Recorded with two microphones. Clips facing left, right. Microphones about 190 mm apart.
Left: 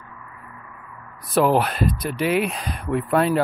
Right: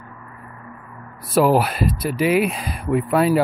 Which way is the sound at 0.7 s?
30° right (ahead or behind).